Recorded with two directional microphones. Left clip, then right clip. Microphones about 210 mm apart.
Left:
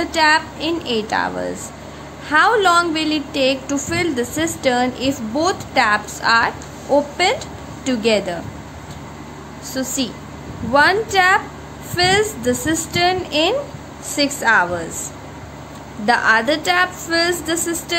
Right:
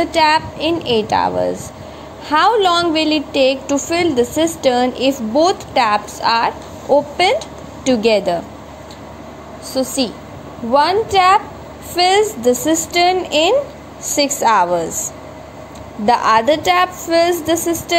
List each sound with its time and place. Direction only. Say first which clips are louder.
0.0 s a woman's voice: right 2 dB; 15° right (ahead or behind)
9.7 s a woman's voice: right 5 dB; 10° right (ahead or behind)
16.1 s a woman's voice: right 3 dB; 15° right (ahead or behind)